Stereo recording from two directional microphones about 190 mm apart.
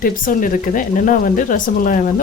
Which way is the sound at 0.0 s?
45° left (ahead or behind).